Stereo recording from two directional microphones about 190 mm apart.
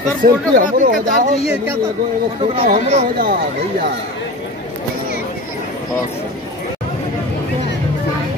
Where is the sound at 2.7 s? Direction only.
45° right (ahead or behind).